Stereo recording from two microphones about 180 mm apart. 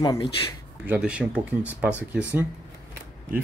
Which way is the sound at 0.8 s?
10° right (ahead or behind).